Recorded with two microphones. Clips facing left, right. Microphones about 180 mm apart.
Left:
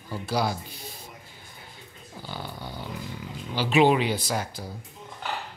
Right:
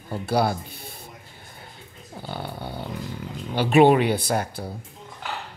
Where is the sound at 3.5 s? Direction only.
55° right (ahead or behind).